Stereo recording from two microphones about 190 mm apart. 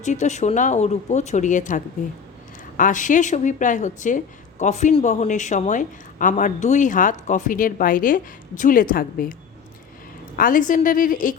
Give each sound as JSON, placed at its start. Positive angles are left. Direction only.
{"t": 0.0, "sound": "speech", "side_deg": 40}
{"t": 10.3, "sound": "speech", "side_deg": 45}